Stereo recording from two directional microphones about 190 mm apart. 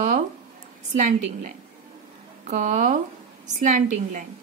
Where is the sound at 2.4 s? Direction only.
40° right (ahead or behind).